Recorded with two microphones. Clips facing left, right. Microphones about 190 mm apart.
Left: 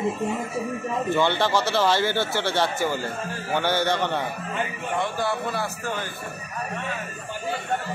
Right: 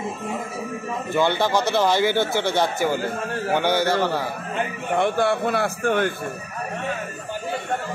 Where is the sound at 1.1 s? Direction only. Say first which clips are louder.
Right 3 dB; 10° right (ahead or behind).